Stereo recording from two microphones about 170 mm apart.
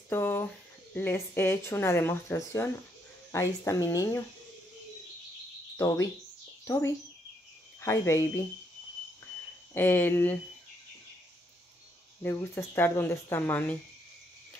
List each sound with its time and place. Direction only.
0.1 s speech: 10° left (ahead or behind)
5.8 s speech: 20° left (ahead or behind)
9.8 s speech: 10° left (ahead or behind)
12.2 s speech: 15° left (ahead or behind)